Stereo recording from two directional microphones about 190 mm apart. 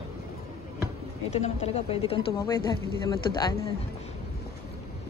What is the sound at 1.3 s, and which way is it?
Speech, 35° left (ahead or behind).